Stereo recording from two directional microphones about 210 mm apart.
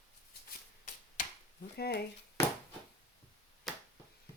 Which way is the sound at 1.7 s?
50° left (ahead or behind).